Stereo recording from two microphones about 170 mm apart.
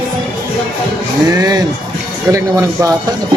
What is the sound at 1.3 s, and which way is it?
Speech, 25° right (ahead or behind).